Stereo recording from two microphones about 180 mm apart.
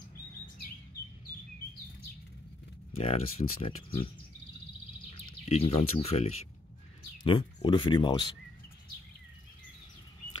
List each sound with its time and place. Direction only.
3.0 s speech: 35° left (ahead or behind)
5.1 s speech: 30° left (ahead or behind)